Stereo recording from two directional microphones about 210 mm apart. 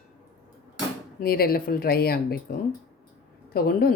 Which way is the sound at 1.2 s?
45° left (ahead or behind).